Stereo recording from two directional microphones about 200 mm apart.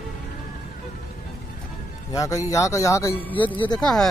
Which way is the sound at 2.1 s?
15° left (ahead or behind).